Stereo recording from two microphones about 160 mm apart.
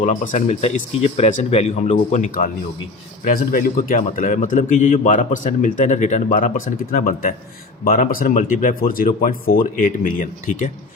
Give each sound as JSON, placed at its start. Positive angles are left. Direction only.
{"t": 0.0, "sound": "a man's voice", "side_deg": 50}
{"t": 3.2, "sound": "a man's voice", "side_deg": 65}